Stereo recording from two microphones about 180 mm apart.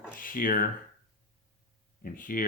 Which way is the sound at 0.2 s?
50° left (ahead or behind).